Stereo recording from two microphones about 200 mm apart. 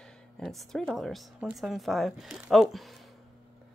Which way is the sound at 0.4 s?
Centre (ahead or behind).